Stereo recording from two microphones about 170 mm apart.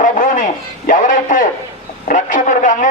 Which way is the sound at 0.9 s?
50° left (ahead or behind).